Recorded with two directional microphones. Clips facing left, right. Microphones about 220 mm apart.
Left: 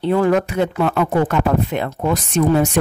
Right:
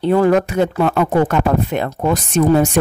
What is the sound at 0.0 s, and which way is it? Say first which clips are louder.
Speech: right 3 dB; 40° right (ahead or behind).